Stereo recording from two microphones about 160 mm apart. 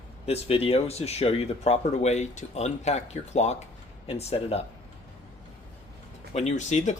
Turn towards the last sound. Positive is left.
turn(degrees=45)  # may be behind; listen again after turning